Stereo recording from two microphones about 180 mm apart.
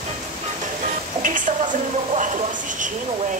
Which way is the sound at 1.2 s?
45° right (ahead or behind).